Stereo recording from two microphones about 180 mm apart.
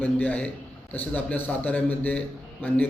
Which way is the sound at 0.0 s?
10° left (ahead or behind).